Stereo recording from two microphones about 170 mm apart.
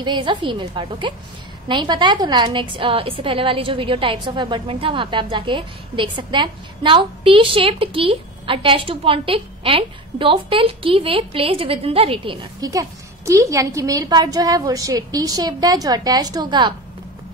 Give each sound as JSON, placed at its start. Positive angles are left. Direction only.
{"t": 0.0, "sound": "a woman's voice", "side_deg": -30}